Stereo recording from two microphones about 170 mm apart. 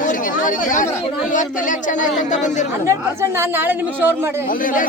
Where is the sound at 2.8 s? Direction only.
15° right (ahead or behind).